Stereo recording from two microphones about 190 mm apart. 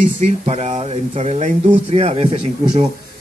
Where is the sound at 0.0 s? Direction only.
35° right (ahead or behind).